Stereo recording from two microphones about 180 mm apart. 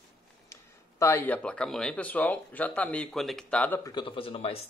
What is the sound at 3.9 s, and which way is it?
Speech, 25° left (ahead or behind).